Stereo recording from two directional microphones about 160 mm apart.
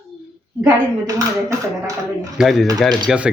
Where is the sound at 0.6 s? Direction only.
20° right (ahead or behind).